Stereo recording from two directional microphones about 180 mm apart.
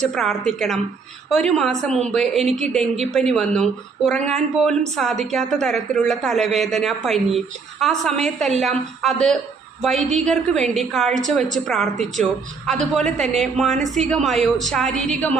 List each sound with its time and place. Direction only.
0.0 s speech: centre (ahead or behind)